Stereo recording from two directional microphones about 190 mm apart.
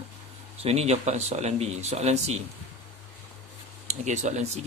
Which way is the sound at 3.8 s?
40° right (ahead or behind).